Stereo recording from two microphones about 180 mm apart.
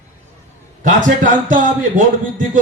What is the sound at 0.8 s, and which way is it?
A man's voice, 45° right (ahead or behind).